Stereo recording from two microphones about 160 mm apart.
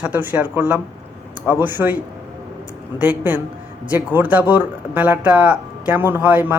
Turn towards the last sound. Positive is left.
turn(degrees=-10)  # may be behind; listen again after turning